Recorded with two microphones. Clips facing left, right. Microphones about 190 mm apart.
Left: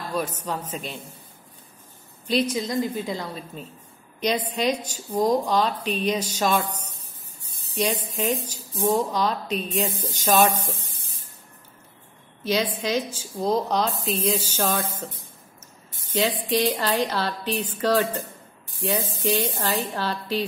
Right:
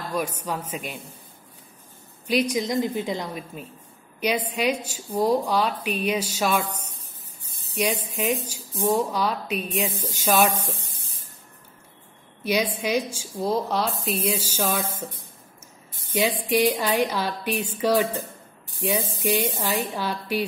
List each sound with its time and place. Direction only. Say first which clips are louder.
0.1 s a woman's voice: even; 10° right (ahead or behind)
2.2 s a woman's voice: right 1 dB; 10° right (ahead or behind)
7.7 s a woman's voice: even; 10° right (ahead or behind)
12.4 s a woman's voice: even; 10° right (ahead or behind)